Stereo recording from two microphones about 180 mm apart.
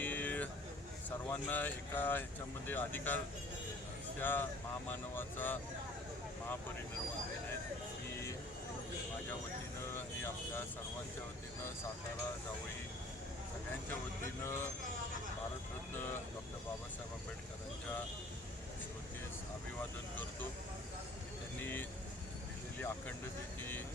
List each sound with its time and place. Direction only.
0.0 s vehicle: 10° left (ahead or behind)
1.3 s speech: 10° left (ahead or behind)
4.2 s speech: 10° left (ahead or behind)
14.4 s speech: 15° left (ahead or behind)
21.6 s speech: 10° left (ahead or behind)